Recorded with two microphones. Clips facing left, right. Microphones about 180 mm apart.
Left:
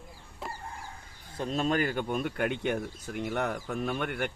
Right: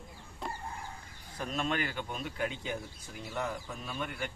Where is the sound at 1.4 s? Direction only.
35° left (ahead or behind).